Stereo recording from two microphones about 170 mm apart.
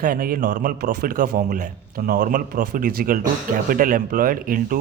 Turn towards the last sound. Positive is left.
turn(degrees=-55)  # may be behind; listen again after turning